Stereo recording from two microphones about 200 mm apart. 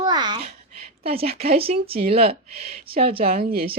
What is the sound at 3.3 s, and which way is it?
Speech, 50° right (ahead or behind).